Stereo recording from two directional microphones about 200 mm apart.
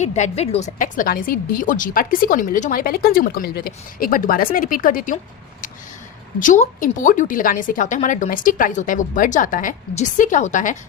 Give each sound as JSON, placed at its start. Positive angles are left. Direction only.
{"t": 0.0, "sound": "a woman's voice", "side_deg": 35}
{"t": 6.4, "sound": "a woman's voice", "side_deg": 40}